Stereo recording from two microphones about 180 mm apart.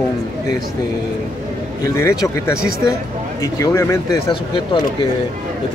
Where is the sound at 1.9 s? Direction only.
15° left (ahead or behind).